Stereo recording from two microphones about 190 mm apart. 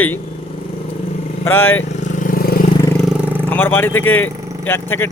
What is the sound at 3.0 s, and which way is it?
Vehicle, 10° right (ahead or behind).